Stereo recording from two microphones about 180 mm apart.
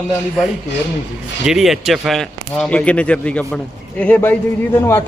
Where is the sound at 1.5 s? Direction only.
Centre (ahead or behind).